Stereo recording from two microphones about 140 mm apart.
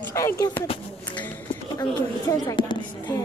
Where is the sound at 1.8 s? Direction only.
25° left (ahead or behind).